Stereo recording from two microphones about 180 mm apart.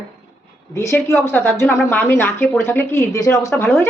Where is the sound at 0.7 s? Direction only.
15° left (ahead or behind).